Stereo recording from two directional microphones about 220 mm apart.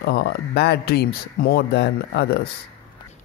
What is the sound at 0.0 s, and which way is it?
Speech, 50° left (ahead or behind).